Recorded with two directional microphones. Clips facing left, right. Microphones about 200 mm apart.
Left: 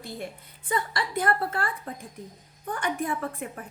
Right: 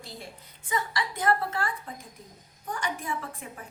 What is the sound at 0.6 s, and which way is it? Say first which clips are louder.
A woman's voice: left 2 dB; 55° left (ahead or behind).